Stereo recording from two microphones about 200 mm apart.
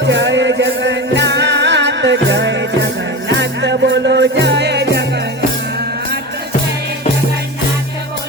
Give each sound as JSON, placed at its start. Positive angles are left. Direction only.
{"t": 0.1, "sound": "music", "side_deg": -65}